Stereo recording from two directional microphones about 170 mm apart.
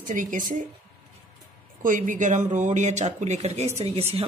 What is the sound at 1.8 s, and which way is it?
Speech, 50° right (ahead or behind).